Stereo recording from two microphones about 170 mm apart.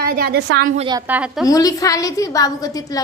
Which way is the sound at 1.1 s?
5° right (ahead or behind).